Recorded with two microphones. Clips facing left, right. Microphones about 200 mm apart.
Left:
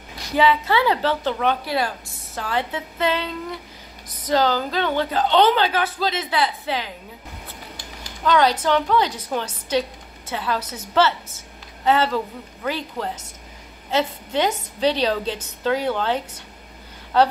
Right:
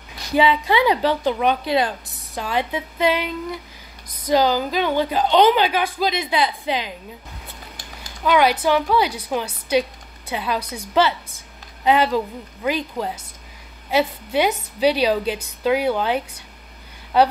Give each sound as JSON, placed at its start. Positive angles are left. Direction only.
{"t": 0.4, "sound": "a woman's voice", "side_deg": -15}
{"t": 8.2, "sound": "a woman's voice", "side_deg": -10}